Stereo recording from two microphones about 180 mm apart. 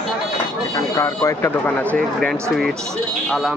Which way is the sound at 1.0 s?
15° left (ahead or behind).